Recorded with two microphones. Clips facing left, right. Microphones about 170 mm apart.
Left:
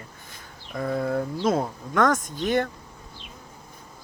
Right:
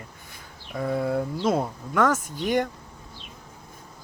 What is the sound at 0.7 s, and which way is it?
Speech, 10° right (ahead or behind).